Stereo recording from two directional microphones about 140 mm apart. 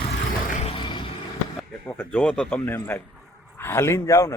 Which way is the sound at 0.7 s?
35° left (ahead or behind).